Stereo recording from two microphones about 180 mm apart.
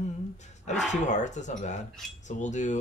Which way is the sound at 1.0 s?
40° left (ahead or behind).